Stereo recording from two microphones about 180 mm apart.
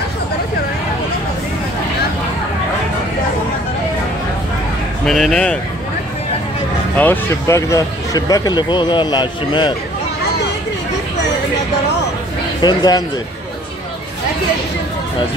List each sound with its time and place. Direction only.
5.0 s speech: centre (ahead or behind)
7.0 s speech: 15° left (ahead or behind)
12.6 s speech: 20° left (ahead or behind)